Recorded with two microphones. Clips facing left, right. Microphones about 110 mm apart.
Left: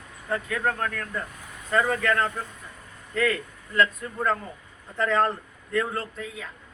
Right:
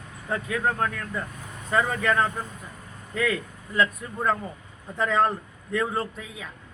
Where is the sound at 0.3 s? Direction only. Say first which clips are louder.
Even; 15° right (ahead or behind).